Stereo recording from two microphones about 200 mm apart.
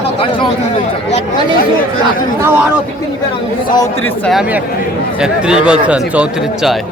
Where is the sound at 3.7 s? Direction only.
15° left (ahead or behind).